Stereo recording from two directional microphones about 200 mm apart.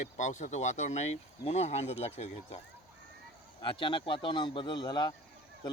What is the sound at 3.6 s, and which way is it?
Speech, 25° left (ahead or behind).